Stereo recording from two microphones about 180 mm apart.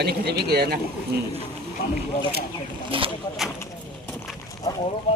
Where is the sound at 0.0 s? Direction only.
65° right (ahead or behind).